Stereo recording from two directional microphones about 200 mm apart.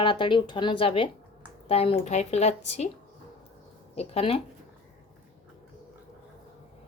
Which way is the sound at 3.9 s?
30° left (ahead or behind).